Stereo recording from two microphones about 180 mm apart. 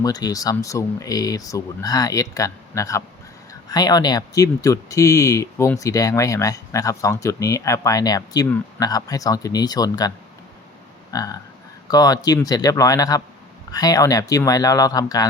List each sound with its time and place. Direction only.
0.0 s speech: 20° left (ahead or behind)
11.1 s a sound: 20° left (ahead or behind)
11.9 s speech: 20° left (ahead or behind)